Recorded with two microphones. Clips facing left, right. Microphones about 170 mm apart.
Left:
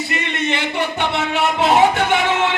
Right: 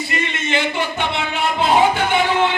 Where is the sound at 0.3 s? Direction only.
65° left (ahead or behind).